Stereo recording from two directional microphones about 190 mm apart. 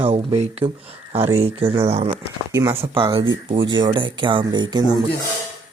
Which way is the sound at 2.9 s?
25° right (ahead or behind).